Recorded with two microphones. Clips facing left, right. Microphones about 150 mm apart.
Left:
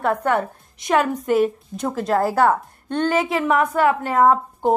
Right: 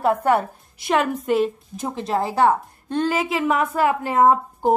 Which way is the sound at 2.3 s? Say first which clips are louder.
Even; 25° right (ahead or behind).